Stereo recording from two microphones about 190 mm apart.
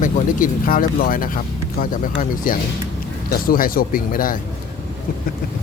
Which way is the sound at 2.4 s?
45° left (ahead or behind).